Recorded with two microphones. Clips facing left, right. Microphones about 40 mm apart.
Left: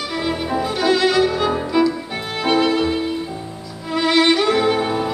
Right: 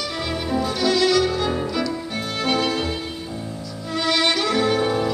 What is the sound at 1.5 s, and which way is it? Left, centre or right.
Music, left.